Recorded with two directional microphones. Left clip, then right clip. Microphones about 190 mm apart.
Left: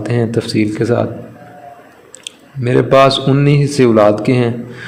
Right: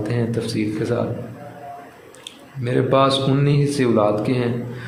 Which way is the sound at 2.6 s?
35° left (ahead or behind).